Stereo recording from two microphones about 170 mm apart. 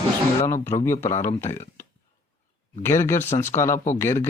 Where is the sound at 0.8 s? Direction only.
15° left (ahead or behind).